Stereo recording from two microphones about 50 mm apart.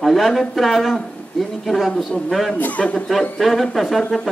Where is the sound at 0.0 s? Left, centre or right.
Centre.